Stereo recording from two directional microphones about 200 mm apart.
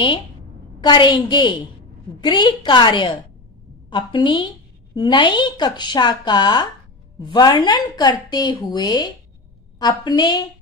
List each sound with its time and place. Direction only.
0.7 s a woman's voice: 20° left (ahead or behind)